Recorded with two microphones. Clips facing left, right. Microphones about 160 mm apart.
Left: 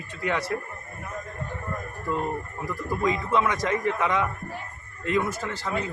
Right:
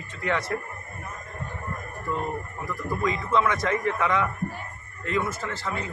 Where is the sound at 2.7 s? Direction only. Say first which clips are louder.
Left 1 dB; 15° left (ahead or behind).